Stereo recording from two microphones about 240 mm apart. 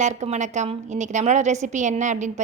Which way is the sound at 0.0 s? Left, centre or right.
Right.